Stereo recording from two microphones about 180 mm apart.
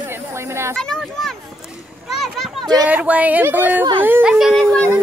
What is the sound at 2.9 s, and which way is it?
Speech, 10° right (ahead or behind).